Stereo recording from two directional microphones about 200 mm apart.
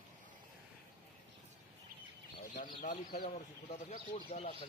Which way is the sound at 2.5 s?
40° left (ahead or behind).